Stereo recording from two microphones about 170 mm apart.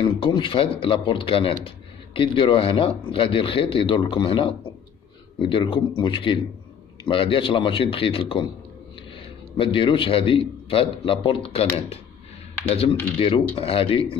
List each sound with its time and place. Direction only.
0.0 s a man's voice: 30° left (ahead or behind)
9.6 s speech: 30° left (ahead or behind)
13.2 s speech: 35° left (ahead or behind)